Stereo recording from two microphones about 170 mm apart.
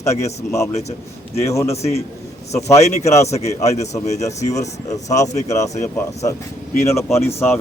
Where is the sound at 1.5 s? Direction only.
15° left (ahead or behind).